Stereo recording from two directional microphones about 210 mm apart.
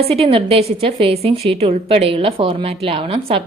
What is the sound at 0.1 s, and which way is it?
A woman's voice, 25° right (ahead or behind).